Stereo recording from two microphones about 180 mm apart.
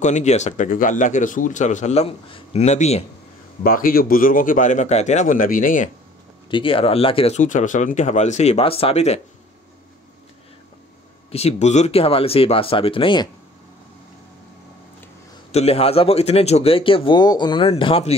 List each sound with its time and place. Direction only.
0.0 s speech: 40° left (ahead or behind)
3.6 s speech: 50° left (ahead or behind)
6.5 s speech: 30° left (ahead or behind)
11.3 s speech: 35° left (ahead or behind)
15.5 s speech: 35° left (ahead or behind)